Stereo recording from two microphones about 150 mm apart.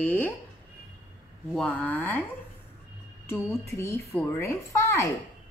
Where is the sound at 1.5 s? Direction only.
10° left (ahead or behind).